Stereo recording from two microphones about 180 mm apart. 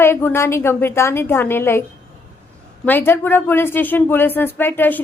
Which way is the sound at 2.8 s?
10° left (ahead or behind).